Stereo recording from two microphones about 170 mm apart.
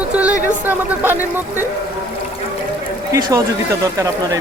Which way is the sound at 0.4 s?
10° right (ahead or behind).